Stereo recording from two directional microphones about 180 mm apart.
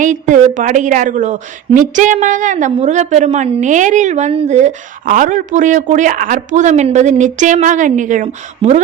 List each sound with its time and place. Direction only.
0.0 s a woman's voice: 45° right (ahead or behind)